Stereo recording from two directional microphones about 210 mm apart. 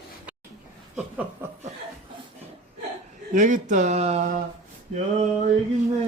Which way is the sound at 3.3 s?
35° right (ahead or behind).